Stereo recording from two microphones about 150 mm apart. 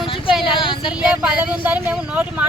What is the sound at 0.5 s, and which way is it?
Speech, 30° left (ahead or behind).